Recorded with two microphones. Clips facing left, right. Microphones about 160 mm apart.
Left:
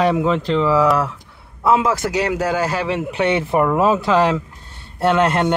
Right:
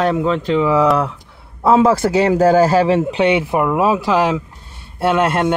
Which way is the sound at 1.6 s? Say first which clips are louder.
Right 4 dB; 30° right (ahead or behind).